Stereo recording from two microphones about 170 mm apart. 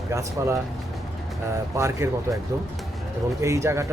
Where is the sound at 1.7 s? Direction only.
15° right (ahead or behind).